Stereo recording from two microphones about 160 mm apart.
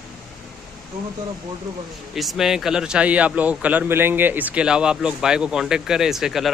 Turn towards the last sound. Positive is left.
turn(degrees=0)  # may be behind; listen again after turning